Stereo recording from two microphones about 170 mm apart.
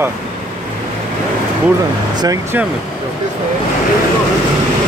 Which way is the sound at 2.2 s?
20° right (ahead or behind).